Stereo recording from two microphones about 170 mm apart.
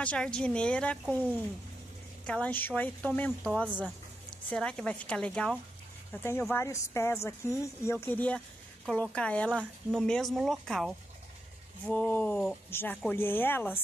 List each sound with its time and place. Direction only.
0.0 s speech: 5° left (ahead or behind)
3.6 s speech: 5° right (ahead or behind)
4.5 s speech: 5° left (ahead or behind)
11.9 s speech: 10° left (ahead or behind)